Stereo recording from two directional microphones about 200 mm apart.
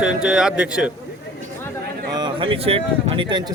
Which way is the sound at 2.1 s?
25° right (ahead or behind).